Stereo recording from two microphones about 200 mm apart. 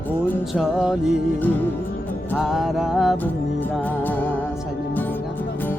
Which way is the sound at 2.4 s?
Centre (ahead or behind).